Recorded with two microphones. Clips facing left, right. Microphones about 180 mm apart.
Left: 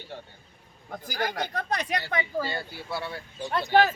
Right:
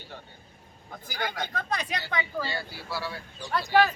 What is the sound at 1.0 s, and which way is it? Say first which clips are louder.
Speech: left 3 dB; 40° left (ahead or behind).